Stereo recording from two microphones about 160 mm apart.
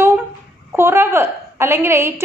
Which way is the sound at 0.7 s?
15° right (ahead or behind).